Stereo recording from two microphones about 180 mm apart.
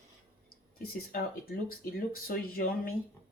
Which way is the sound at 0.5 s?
55° left (ahead or behind).